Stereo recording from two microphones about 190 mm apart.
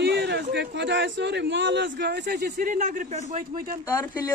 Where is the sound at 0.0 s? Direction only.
60° right (ahead or behind).